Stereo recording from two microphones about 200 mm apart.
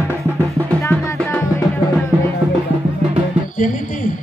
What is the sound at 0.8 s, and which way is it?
Music, 10° left (ahead or behind).